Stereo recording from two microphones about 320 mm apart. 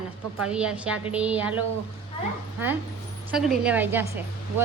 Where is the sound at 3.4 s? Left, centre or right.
Centre.